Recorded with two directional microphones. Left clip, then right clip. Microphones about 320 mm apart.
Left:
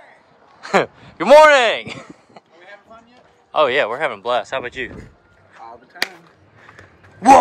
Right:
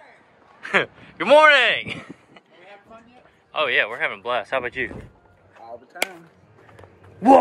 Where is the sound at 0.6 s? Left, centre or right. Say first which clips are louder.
Left 4 dB; centre.